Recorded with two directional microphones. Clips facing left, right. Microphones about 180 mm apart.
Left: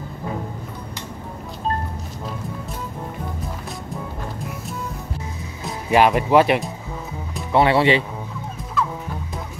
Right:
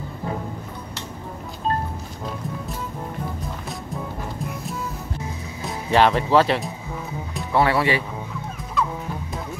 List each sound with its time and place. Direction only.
5.9 s speech: 10° left (ahead or behind)
8.8 s music: centre (ahead or behind)